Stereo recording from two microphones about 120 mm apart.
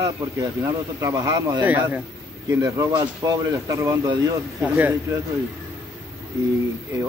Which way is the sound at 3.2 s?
25° right (ahead or behind).